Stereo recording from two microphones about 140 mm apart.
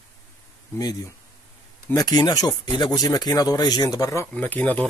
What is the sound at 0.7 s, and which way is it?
Speech, 25° left (ahead or behind).